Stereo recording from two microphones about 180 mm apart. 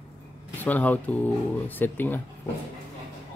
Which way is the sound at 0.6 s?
10° left (ahead or behind).